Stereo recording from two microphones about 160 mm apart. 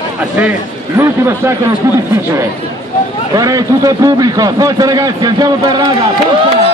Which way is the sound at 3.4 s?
20° right (ahead or behind).